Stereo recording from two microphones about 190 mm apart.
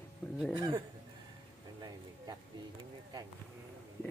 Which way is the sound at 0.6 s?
25° right (ahead or behind).